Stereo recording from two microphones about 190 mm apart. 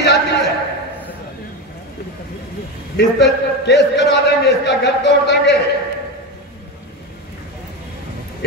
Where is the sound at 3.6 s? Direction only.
60° left (ahead or behind).